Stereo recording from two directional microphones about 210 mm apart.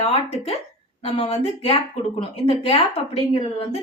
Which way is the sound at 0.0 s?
30° left (ahead or behind).